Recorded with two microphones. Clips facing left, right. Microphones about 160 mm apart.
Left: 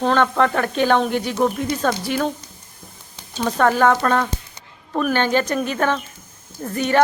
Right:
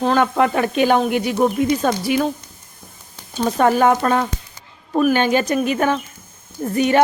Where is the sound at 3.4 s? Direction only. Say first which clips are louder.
Right 1 dB; 15° right (ahead or behind).